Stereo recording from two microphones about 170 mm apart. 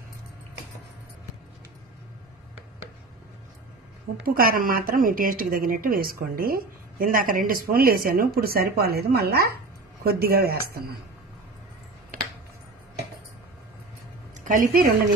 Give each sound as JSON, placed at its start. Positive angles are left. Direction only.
{"t": 4.2, "sound": "speech", "side_deg": -60}
{"t": 14.4, "sound": "a woman's voice", "side_deg": -50}